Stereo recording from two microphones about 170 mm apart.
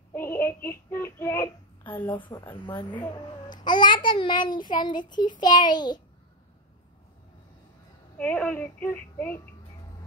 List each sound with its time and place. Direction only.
0.1 s a child's voice: 15° left (ahead or behind)
2.1 s a child's voice: 30° left (ahead or behind)
8.2 s speech: 10° left (ahead or behind)